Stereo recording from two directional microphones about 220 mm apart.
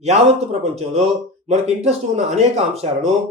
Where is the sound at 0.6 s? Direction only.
30° right (ahead or behind).